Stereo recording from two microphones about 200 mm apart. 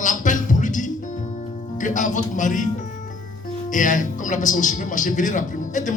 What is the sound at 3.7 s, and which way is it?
Speech, 40° left (ahead or behind).